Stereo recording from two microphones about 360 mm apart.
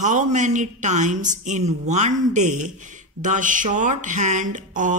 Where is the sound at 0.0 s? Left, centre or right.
Centre.